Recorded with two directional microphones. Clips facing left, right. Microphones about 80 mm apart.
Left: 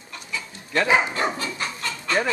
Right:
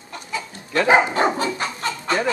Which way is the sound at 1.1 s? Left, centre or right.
Right.